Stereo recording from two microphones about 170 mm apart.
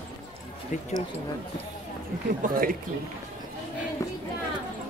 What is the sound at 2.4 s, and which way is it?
Speech, 50° right (ahead or behind).